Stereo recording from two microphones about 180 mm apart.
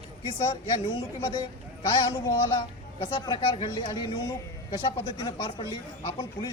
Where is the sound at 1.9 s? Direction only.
25° left (ahead or behind).